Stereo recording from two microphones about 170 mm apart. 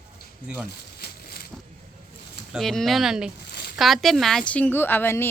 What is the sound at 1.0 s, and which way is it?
Crushing, 65° left (ahead or behind).